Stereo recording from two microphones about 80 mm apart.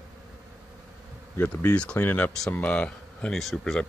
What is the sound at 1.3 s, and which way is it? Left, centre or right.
Speech, left.